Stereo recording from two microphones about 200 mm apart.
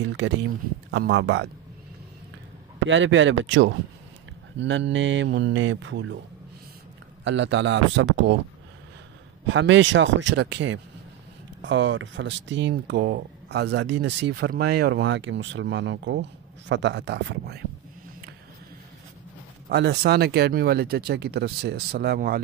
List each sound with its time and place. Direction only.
0.9 s speech: 60° right (ahead or behind)
2.9 s speech: 70° right (ahead or behind)
7.2 s speech: 65° right (ahead or behind)
9.5 s speech: 70° right (ahead or behind)
19.7 s speech: 55° right (ahead or behind)